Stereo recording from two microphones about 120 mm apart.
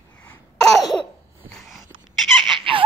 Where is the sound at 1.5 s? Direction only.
Centre (ahead or behind).